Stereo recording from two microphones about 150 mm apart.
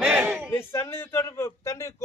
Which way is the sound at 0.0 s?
5° right (ahead or behind).